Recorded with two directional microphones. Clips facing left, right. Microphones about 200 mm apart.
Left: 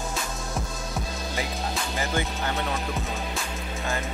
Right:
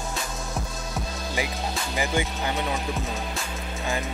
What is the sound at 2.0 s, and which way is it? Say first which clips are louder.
Speech: right 3 dB; 15° right (ahead or behind).